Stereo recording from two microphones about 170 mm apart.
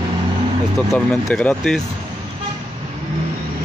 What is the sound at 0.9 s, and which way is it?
Speech, centre (ahead or behind).